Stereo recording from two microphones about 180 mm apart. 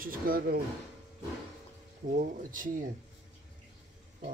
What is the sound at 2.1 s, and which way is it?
Speech, 50° right (ahead or behind).